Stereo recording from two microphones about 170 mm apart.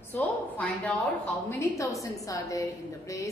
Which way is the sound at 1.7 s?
20° left (ahead or behind).